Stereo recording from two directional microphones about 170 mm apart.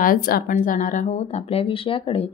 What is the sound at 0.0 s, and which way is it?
A woman's voice, 60° left (ahead or behind).